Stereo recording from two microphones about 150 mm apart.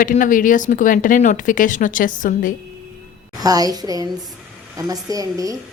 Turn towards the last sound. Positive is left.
turn(degrees=-25)  # may be behind; listen again after turning